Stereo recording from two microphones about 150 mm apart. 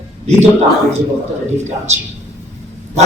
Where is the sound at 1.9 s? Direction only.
45° right (ahead or behind).